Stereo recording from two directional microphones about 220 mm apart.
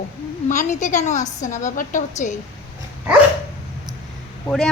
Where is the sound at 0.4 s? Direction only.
35° left (ahead or behind).